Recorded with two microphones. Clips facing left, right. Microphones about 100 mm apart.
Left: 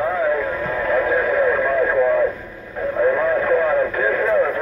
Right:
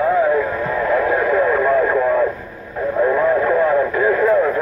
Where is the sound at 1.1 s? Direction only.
35° right (ahead or behind).